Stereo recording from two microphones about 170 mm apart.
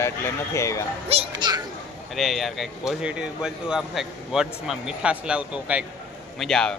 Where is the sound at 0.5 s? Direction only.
15° left (ahead or behind).